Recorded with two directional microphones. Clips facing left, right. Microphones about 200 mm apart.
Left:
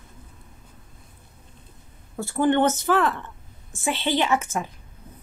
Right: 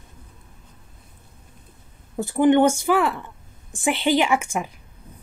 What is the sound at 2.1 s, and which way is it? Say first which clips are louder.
Speech: right 4 dB; 15° right (ahead or behind).